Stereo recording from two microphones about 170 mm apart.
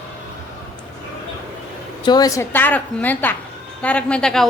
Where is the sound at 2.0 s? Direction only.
25° left (ahead or behind).